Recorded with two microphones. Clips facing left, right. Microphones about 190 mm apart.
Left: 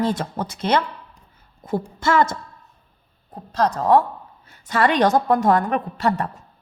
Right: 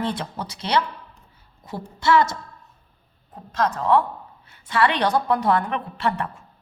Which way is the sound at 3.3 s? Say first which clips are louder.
Left 3 dB; 35° left (ahead or behind).